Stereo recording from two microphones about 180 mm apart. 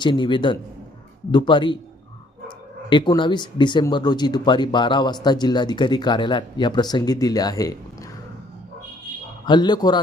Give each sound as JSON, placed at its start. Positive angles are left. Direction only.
{"t": 0.0, "sound": "speech", "side_deg": 25}
{"t": 2.9, "sound": "speech", "side_deg": 25}
{"t": 9.5, "sound": "speech", "side_deg": 25}